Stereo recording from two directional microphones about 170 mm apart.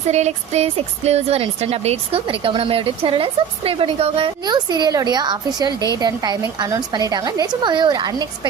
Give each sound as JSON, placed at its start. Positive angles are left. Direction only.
{"t": 0.1, "sound": "a woman's voice", "side_deg": -40}